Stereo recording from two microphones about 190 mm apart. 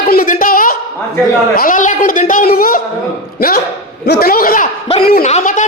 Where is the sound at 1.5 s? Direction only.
45° left (ahead or behind).